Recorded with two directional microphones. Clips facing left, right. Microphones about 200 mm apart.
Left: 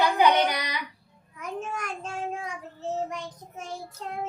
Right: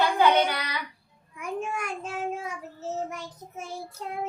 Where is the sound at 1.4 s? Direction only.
10° right (ahead or behind).